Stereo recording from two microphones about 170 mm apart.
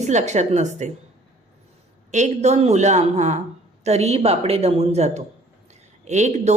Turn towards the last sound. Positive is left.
turn(degrees=-40)  # may be behind; listen again after turning